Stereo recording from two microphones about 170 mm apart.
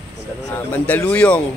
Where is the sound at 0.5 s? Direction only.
10° left (ahead or behind).